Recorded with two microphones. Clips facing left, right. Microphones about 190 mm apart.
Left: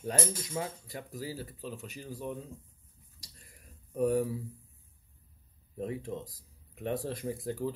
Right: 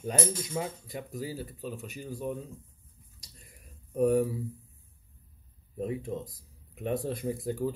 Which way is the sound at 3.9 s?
15° right (ahead or behind).